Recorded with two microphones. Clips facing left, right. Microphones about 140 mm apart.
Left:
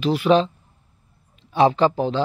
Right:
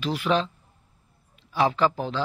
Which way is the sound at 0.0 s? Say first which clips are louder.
Left 7 dB; 20° left (ahead or behind).